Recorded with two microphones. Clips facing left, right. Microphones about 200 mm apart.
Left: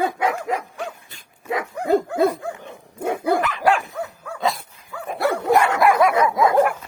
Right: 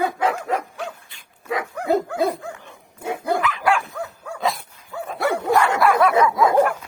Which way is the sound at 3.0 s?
55° left (ahead or behind).